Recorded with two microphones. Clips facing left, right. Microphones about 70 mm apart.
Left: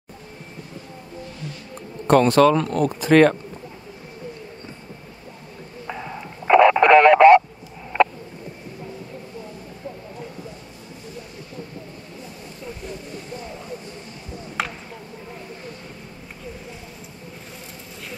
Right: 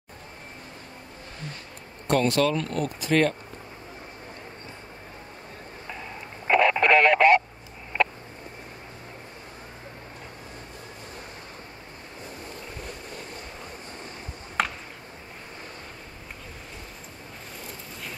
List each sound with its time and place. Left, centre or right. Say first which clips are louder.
2.0 s speech: left 8 dB; left
3.1 s speech: left 8 dB; left
6.5 s radio: left 7 dB; centre
14.6 s a sound: right 1 dB; centre